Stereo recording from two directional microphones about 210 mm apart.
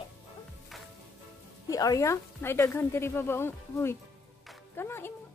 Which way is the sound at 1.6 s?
15° left (ahead or behind).